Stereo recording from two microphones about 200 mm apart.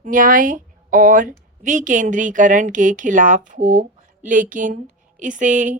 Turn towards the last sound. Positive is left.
turn(degrees=-40)  # may be behind; listen again after turning